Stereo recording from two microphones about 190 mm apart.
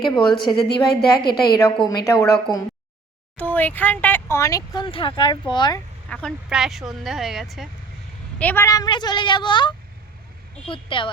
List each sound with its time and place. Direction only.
0.1 s a woman's voice: 25° left (ahead or behind)
3.3 s speech: 10° left (ahead or behind)
6.1 s speech: 5° left (ahead or behind)
8.4 s a woman's voice: 10° left (ahead or behind); by 11.1 s 25° left (ahead or behind)